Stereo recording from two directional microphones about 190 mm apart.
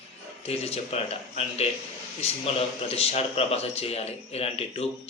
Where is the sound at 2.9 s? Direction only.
30° left (ahead or behind).